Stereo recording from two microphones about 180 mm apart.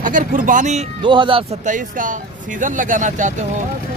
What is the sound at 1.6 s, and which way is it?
Speech, 45° right (ahead or behind).